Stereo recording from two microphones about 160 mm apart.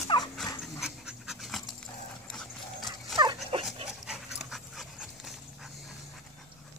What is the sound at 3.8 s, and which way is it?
Dog, 5° right (ahead or behind).